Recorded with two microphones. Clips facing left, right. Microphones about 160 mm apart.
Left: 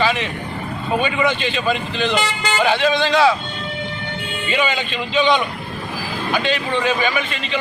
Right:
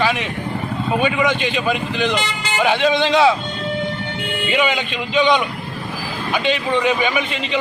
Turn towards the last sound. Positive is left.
turn(degrees=-20)  # may be behind; listen again after turning